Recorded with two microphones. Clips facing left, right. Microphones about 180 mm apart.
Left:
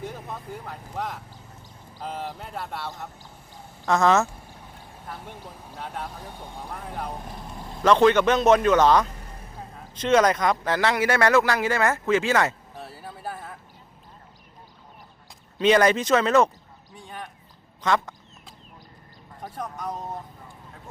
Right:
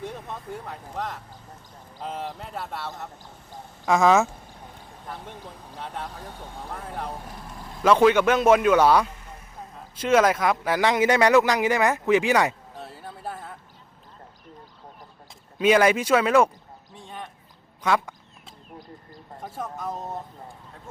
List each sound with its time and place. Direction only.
0.0 s speech: centre (ahead or behind)
5.0 s speech: 5° left (ahead or behind)
6.8 s speech: centre (ahead or behind)
7.1 s speech: 25° left (ahead or behind)
7.5 s vehicle: 20° left (ahead or behind)
7.8 s speech: 5° right (ahead or behind)
12.7 s a sound: 5° left (ahead or behind)
15.5 s speech: 10° right (ahead or behind)
16.9 s a sound: centre (ahead or behind)
17.8 s speech: 10° right (ahead or behind)
19.4 s speech: centre (ahead or behind)